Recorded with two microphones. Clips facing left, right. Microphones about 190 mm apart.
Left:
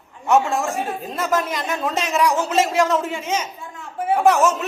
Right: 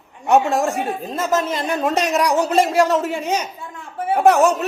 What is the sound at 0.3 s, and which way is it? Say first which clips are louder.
Speech: right 2 dB; 35° right (ahead or behind).